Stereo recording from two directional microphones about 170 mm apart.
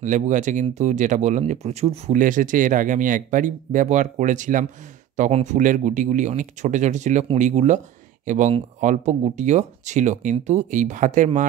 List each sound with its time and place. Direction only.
0.0 s speech: 45° right (ahead or behind)